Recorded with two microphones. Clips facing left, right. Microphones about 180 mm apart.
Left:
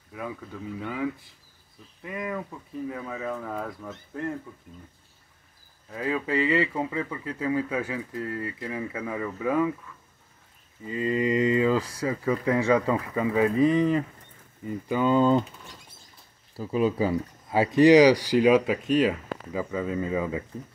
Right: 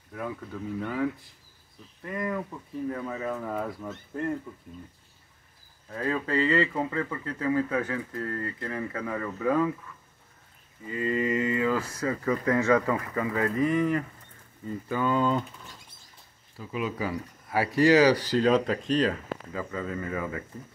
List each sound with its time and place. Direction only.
0.7 s speech: 5° left (ahead or behind)
2.0 s speech: 5° left (ahead or behind)
5.9 s speech: 10° left (ahead or behind)
10.9 s speech: 20° left (ahead or behind)
16.5 s speech: 35° left (ahead or behind)